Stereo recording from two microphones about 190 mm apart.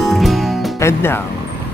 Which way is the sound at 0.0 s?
Centre (ahead or behind).